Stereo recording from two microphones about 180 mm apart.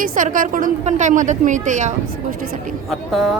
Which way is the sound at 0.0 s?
50° right (ahead or behind).